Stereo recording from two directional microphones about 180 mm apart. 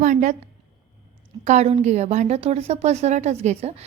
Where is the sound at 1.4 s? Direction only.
40° right (ahead or behind).